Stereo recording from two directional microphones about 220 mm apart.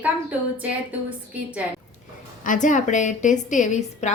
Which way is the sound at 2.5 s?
35° left (ahead or behind).